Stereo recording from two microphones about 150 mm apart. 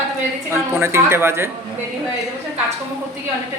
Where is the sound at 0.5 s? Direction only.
15° right (ahead or behind).